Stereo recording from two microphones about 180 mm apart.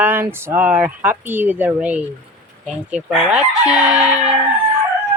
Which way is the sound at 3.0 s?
5° right (ahead or behind).